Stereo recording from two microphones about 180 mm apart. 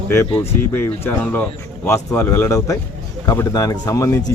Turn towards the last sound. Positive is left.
turn(degrees=15)  # may be behind; listen again after turning